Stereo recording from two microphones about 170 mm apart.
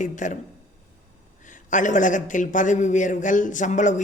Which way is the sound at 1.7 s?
50° left (ahead or behind).